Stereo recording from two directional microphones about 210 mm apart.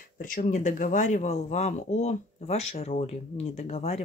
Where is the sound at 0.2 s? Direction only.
40° left (ahead or behind).